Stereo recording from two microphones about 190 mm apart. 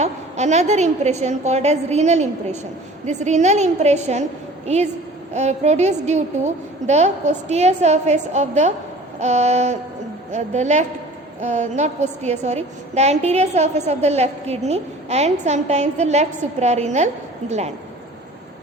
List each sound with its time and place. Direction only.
0.0 s a woman's voice: 35° right (ahead or behind)